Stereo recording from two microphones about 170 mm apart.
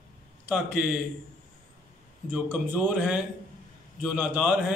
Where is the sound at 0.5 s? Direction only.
5° right (ahead or behind).